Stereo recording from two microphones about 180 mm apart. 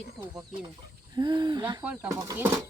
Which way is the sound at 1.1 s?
25° right (ahead or behind).